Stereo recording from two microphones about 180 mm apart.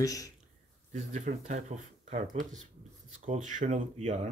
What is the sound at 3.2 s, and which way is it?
Speech, 45° right (ahead or behind).